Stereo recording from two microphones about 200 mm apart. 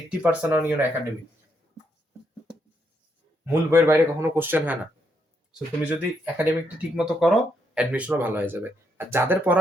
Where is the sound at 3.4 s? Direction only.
10° right (ahead or behind).